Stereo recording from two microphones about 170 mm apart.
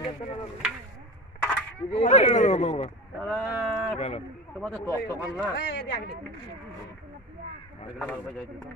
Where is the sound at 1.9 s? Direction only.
40° left (ahead or behind).